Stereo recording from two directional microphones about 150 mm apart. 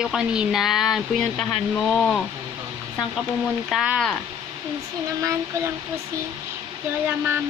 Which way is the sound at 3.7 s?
5° right (ahead or behind).